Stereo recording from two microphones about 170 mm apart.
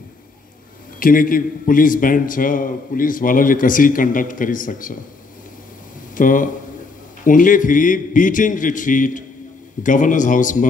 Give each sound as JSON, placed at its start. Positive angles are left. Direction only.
{"t": 0.9, "sound": "a man's voice", "side_deg": 55}
{"t": 6.1, "sound": "a man's voice", "side_deg": 50}